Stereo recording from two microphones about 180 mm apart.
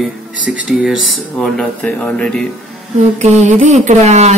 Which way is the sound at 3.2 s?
40° right (ahead or behind).